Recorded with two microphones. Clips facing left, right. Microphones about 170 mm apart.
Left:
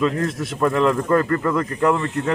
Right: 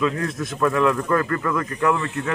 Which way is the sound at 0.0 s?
30° left (ahead or behind).